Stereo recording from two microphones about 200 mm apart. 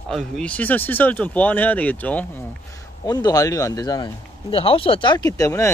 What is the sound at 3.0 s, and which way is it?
Speech, 20° left (ahead or behind).